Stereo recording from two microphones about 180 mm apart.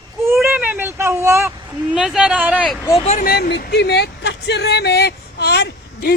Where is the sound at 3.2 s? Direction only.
60° left (ahead or behind).